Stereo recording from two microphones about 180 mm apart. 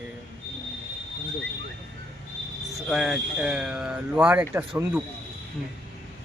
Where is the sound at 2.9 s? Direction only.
Centre (ahead or behind).